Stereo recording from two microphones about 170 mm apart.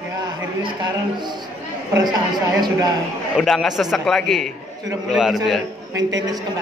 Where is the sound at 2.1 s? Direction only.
25° right (ahead or behind).